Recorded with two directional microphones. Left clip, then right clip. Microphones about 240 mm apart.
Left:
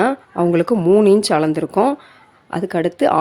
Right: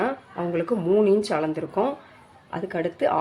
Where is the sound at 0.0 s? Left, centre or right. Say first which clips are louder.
Left 10 dB; left.